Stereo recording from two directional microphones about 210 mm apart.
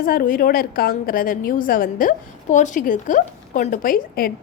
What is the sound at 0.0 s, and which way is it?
A woman's voice, 45° left (ahead or behind).